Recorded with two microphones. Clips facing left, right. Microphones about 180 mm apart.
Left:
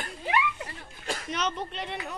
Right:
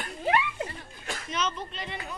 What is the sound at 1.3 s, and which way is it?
Speech, 65° left (ahead or behind).